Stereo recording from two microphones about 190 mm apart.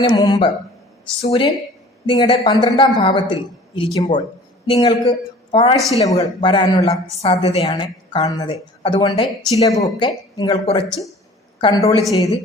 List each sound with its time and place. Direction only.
0.0 s a woman's voice: 25° left (ahead or behind)
7.7 s a woman's voice: 25° left (ahead or behind)